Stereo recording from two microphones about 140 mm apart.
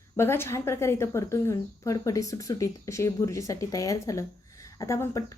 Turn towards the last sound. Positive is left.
turn(degrees=20)  # may be behind; listen again after turning